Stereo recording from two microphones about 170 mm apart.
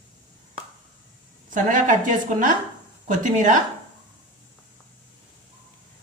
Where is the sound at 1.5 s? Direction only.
50° right (ahead or behind).